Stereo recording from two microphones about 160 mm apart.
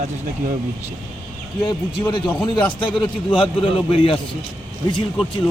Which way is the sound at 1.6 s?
30° left (ahead or behind).